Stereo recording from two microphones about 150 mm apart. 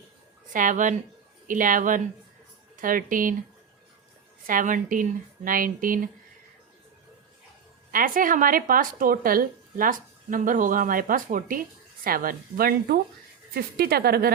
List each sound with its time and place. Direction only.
0.5 s a woman's voice: 60° right (ahead or behind)
4.4 s a woman's voice: 65° right (ahead or behind)
7.9 s speech: 70° right (ahead or behind)
13.5 s a woman's voice: 90° right